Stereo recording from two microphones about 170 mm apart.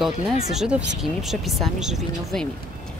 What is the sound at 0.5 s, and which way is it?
Speech, 5° right (ahead or behind).